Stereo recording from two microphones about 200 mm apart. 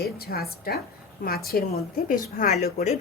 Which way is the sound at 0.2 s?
50° left (ahead or behind).